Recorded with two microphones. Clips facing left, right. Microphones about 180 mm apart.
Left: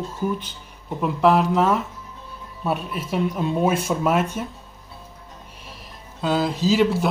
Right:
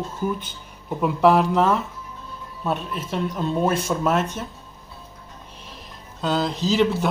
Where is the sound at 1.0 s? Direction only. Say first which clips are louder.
Right 1 dB; centre (ahead or behind).